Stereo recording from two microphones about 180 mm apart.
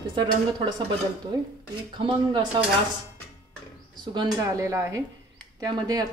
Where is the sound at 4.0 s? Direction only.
25° right (ahead or behind).